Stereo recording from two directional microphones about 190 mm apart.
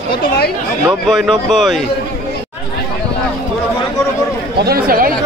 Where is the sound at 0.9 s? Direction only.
Centre (ahead or behind).